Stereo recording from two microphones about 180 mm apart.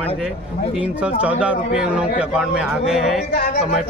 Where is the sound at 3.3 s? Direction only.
70° left (ahead or behind).